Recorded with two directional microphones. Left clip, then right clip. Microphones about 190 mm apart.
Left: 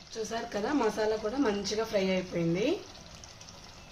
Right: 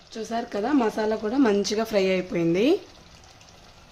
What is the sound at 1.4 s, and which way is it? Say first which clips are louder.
Speech: right 8 dB; 60° right (ahead or behind).